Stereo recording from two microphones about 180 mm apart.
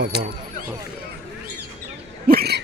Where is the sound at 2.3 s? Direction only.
60° right (ahead or behind).